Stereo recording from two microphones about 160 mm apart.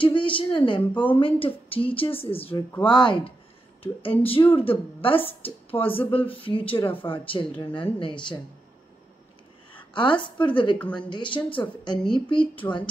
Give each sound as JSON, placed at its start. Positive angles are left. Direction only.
{"t": 0.0, "sound": "speech", "side_deg": 30}
{"t": 2.5, "sound": "speech", "side_deg": 15}
{"t": 2.9, "sound": "a woman's voice", "side_deg": 30}
{"t": 6.8, "sound": "speech", "side_deg": 10}
{"t": 7.1, "sound": "speech", "side_deg": 30}
{"t": 9.7, "sound": "a sound", "side_deg": 30}
{"t": 10.4, "sound": "a woman's voice", "side_deg": 30}